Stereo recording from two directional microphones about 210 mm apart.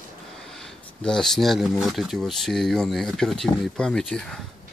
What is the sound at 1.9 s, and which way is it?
Speech, centre (ahead or behind).